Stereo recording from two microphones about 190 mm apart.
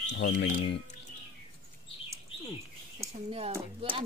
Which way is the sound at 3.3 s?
30° right (ahead or behind).